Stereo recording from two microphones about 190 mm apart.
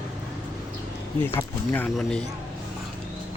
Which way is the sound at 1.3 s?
10° left (ahead or behind).